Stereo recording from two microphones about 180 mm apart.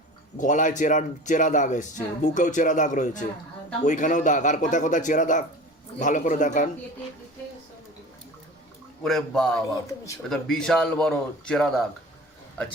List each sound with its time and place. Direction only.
0.3 s speech: 45° left (ahead or behind)
9.0 s speech: centre (ahead or behind)